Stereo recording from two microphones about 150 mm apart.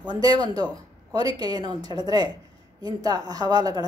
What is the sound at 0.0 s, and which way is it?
A woman's voice, 30° right (ahead or behind).